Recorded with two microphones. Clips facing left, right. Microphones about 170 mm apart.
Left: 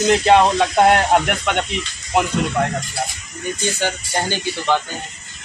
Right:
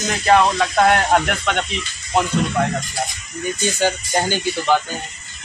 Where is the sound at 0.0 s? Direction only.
20° left (ahead or behind).